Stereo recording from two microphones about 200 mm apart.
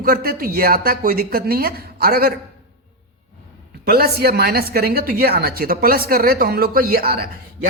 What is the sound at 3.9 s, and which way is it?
A woman's voice, 50° right (ahead or behind).